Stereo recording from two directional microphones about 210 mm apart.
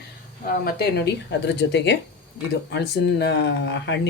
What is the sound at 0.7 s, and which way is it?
Speech, 50° left (ahead or behind).